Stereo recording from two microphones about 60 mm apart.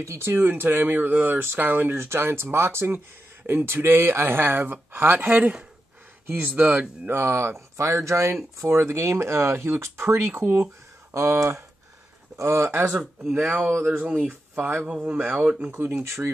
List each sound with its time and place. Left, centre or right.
0.0 s speech: right
5.3 s speech: centre
6.2 s speech: right
7.1 s speech: right
11.1 s speech: right
12.8 s speech: centre
13.9 s speech: right
15.0 s speech: centre
15.6 s speech: right
16.0 s speech: right